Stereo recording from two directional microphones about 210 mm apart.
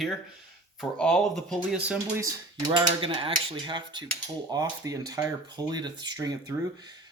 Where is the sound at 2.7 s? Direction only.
25° right (ahead or behind).